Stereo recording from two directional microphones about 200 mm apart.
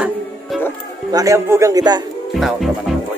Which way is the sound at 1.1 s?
15° right (ahead or behind).